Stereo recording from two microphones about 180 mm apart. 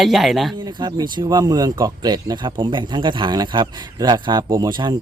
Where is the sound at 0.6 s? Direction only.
25° right (ahead or behind).